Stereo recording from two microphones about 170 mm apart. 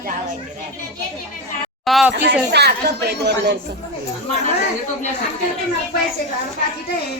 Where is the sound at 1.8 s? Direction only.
Centre (ahead or behind).